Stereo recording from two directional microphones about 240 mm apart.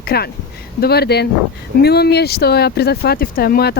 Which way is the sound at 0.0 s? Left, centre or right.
Left.